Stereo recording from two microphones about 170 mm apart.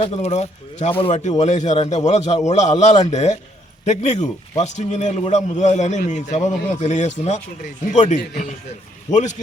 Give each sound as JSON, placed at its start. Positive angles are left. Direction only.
{"t": 0.0, "sound": "a man's voice", "side_deg": 40}